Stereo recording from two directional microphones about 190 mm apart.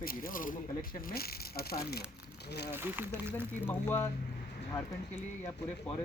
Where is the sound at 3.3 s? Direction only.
10° left (ahead or behind).